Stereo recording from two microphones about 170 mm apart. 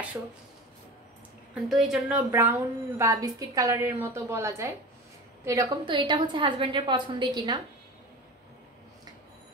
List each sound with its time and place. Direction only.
1.5 s a woman's voice: centre (ahead or behind); by 7.6 s 25° right (ahead or behind)